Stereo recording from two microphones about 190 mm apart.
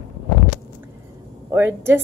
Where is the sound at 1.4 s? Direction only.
10° right (ahead or behind).